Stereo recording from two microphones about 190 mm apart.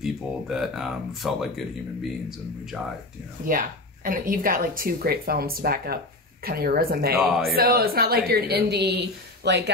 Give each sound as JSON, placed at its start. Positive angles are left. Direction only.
{"t": 0.0, "sound": "speech", "side_deg": 0}
{"t": 3.4, "sound": "a woman's voice", "side_deg": -45}